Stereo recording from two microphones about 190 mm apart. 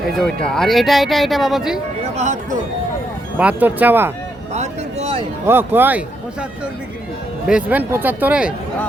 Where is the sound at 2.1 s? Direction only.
40° right (ahead or behind).